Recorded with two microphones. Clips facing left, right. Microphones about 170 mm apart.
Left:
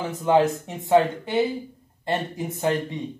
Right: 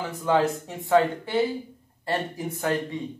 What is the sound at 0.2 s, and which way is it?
Speech, 20° left (ahead or behind).